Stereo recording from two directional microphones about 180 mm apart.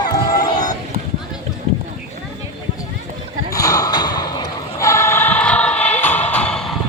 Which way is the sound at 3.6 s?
20° left (ahead or behind).